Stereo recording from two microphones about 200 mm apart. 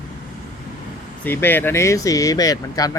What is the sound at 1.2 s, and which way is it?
Speech, 10° left (ahead or behind).